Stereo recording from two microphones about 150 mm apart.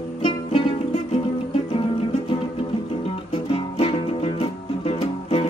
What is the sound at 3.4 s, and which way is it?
Music, 40° left (ahead or behind).